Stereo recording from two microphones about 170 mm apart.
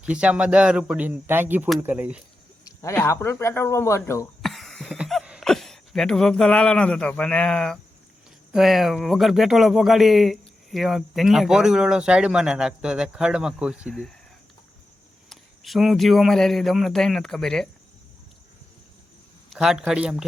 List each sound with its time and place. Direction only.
0.0 s speech: 5° right (ahead or behind)
2.6 s speech: 15° left (ahead or behind)
4.4 s a sound: centre (ahead or behind)
8.5 s speech: centre (ahead or behind)
15.3 s speech: centre (ahead or behind)
19.5 s a man's voice: centre (ahead or behind)